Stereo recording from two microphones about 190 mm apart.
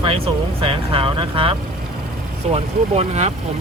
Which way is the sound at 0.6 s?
30° right (ahead or behind).